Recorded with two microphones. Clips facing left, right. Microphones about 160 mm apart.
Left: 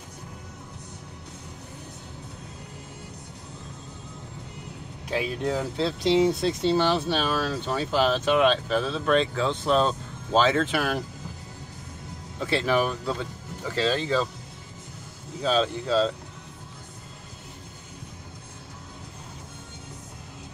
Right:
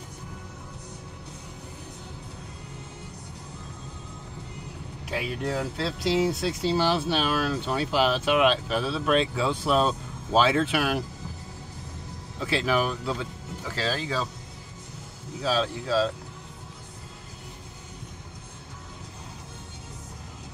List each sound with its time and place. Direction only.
5.1 s speech: 5° right (ahead or behind)
12.5 s speech: 5° right (ahead or behind)
15.4 s speech: 5° right (ahead or behind)